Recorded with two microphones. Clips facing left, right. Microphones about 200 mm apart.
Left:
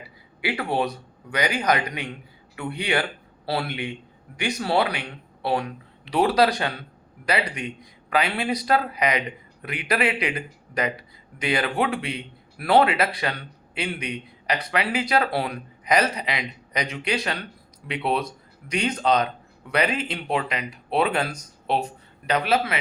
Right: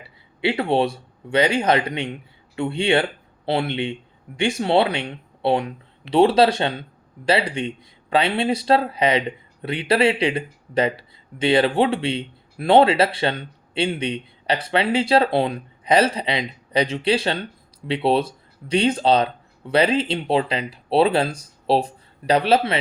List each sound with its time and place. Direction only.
0.4 s a man's voice: 25° right (ahead or behind)